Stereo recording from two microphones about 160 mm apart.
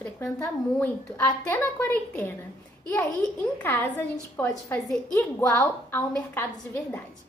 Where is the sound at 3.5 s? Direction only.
10° left (ahead or behind).